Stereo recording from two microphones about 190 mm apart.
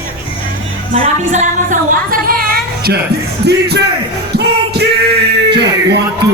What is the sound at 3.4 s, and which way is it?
Speech, 60° right (ahead or behind).